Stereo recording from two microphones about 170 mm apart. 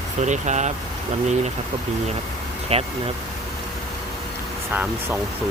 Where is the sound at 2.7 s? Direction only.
35° right (ahead or behind).